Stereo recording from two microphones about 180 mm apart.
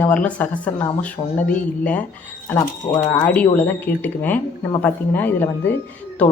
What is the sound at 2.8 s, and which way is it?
Speech, 45° left (ahead or behind).